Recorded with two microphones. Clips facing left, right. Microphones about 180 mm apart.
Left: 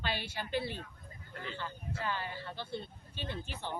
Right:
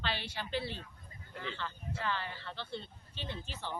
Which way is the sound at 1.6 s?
10° left (ahead or behind).